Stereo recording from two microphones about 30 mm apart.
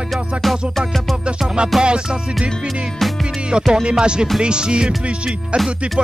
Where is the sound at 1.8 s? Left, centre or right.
Right.